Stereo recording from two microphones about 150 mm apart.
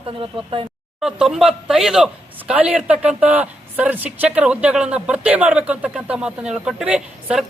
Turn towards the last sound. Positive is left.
turn(degrees=-10)  # may be behind; listen again after turning